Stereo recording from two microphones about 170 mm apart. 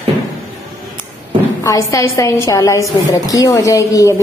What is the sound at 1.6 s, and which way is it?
A woman's voice, 20° left (ahead or behind).